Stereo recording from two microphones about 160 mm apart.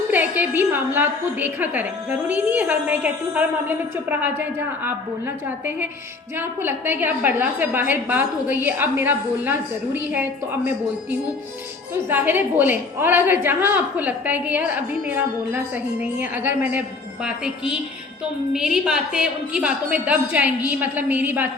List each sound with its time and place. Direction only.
0.1 s a woman's voice: 10° right (ahead or behind)
12.0 s a woman's voice: 10° right (ahead or behind)